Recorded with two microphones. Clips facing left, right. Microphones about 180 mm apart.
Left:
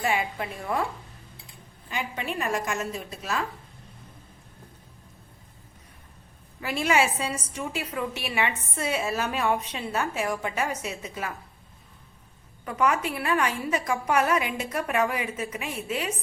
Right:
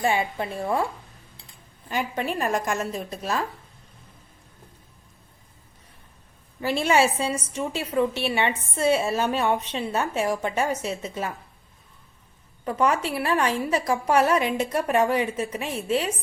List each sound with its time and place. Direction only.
0.0 s a woman's voice: 30° right (ahead or behind)
2.4 s a woman's voice: 40° right (ahead or behind)
6.6 s a woman's voice: 30° right (ahead or behind)
12.6 s a woman's voice: 30° right (ahead or behind)